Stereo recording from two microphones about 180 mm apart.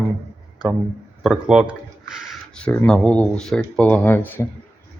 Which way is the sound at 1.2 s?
5° right (ahead or behind).